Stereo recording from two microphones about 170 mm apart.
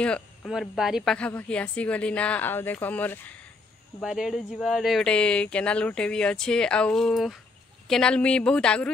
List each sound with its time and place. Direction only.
0.0 s speech: 5° left (ahead or behind)
4.0 s speech: centre (ahead or behind)